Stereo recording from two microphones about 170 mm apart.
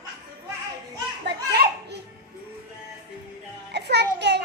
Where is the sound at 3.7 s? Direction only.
80° right.